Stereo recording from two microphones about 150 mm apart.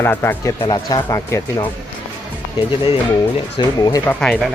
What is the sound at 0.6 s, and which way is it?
Speech, 30° left (ahead or behind).